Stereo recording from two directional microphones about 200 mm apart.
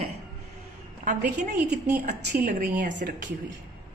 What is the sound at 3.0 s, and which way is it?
Speech, 45° right (ahead or behind).